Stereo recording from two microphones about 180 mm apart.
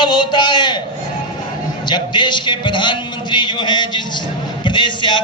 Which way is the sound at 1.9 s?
25° left (ahead or behind).